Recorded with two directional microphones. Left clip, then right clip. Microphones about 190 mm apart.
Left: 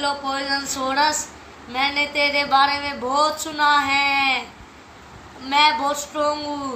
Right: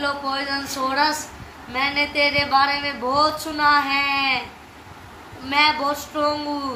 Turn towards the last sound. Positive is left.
turn(degrees=50)  # may be behind; listen again after turning